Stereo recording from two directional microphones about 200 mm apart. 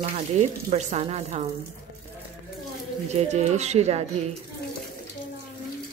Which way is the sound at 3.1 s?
35° right (ahead or behind).